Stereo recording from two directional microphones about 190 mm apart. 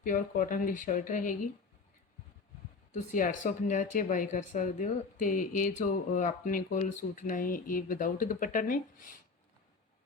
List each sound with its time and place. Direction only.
0.0 s speech: 45° left (ahead or behind)
2.9 s speech: 40° left (ahead or behind)